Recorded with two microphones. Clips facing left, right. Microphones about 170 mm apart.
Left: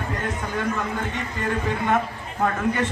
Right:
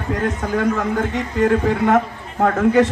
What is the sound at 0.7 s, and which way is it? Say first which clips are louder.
A man's voice: right 7 dB; 90° right.